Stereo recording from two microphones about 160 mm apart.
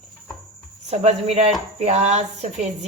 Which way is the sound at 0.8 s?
40° right (ahead or behind).